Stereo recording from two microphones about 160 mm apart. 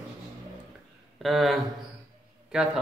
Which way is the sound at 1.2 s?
Centre (ahead or behind).